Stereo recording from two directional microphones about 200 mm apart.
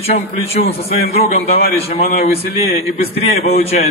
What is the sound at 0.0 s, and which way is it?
A man's voice, 30° left (ahead or behind).